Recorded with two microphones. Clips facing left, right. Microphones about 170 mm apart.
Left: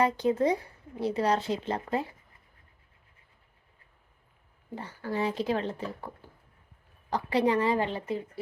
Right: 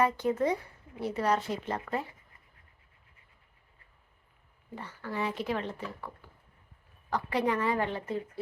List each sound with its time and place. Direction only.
0.2 s speech: 30° left (ahead or behind)
4.7 s speech: 35° left (ahead or behind)
7.9 s speech: 10° left (ahead or behind)